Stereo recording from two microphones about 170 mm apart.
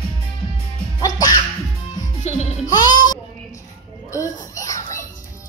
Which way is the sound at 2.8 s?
25° left (ahead or behind).